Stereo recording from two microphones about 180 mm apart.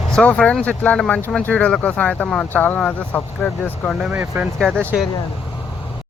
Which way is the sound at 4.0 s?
10° right (ahead or behind).